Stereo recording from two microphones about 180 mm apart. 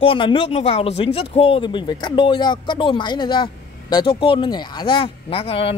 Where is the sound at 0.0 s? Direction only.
30° left (ahead or behind).